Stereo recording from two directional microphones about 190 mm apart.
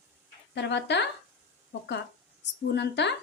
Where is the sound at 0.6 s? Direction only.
65° left (ahead or behind).